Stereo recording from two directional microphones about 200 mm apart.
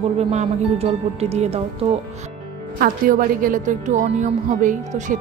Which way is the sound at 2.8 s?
45° right (ahead or behind).